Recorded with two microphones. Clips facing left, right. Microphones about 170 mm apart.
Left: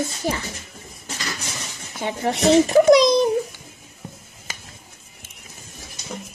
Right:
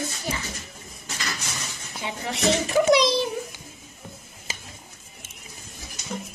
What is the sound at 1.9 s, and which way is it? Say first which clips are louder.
Speech: left 7 dB; 50° left (ahead or behind).